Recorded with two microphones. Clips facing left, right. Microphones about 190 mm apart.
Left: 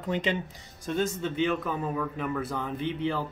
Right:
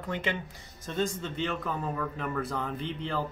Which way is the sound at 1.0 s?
5° left (ahead or behind).